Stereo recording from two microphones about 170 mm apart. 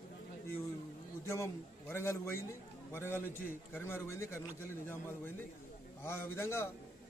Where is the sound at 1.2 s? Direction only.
15° left (ahead or behind).